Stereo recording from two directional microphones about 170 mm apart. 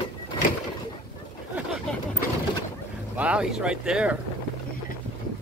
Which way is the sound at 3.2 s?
5° right (ahead or behind).